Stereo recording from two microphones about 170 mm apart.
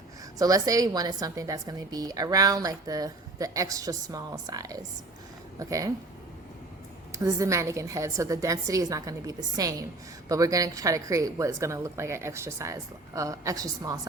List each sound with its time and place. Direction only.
0.3 s a woman's voice: 20° right (ahead or behind)
7.1 s a woman's voice: 20° right (ahead or behind)